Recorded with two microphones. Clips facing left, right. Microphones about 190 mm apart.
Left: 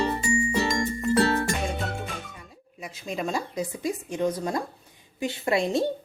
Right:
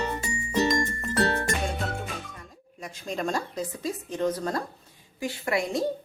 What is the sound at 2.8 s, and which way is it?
Speech, 5° left (ahead or behind).